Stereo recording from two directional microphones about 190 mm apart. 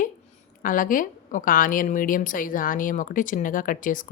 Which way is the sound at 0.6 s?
45° left (ahead or behind).